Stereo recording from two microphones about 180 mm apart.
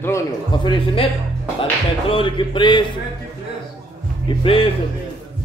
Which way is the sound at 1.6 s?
30° left (ahead or behind).